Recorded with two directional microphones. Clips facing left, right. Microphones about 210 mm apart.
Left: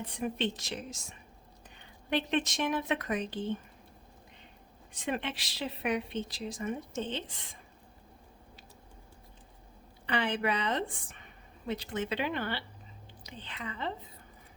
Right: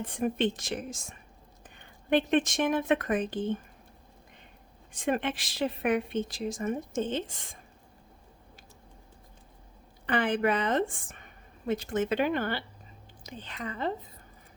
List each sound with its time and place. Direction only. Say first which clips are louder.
0.0 s speech: right 5 dB; 50° right (ahead or behind)
4.9 s speech: right 5 dB; 50° right (ahead or behind)
10.1 s speech: right 4 dB; 50° right (ahead or behind)